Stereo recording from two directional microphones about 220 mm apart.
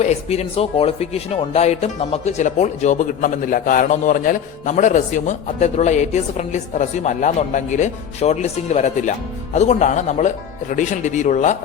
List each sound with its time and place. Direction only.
0.0 s speech: 30° left (ahead or behind)